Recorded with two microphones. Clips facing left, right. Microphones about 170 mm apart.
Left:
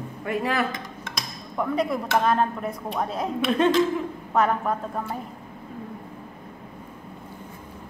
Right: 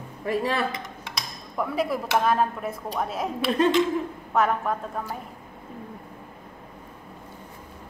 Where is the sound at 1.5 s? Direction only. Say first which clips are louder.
Left 1 dB; 5° right (ahead or behind).